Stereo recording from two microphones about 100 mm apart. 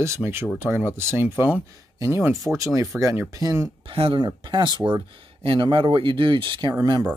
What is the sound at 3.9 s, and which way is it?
Speech, 75° right (ahead or behind).